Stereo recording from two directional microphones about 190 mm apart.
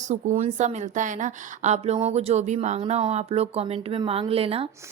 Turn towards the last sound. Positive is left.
turn(degrees=-30)  # may be behind; listen again after turning